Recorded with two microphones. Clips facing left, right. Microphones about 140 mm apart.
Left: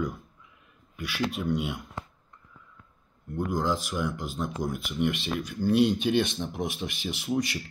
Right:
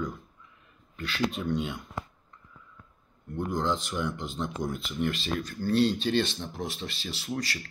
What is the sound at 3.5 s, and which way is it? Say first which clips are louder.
Speech: left 1 dB; 5° left (ahead or behind).